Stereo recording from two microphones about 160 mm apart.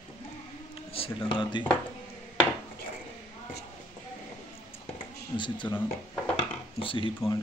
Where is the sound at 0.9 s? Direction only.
35° left (ahead or behind).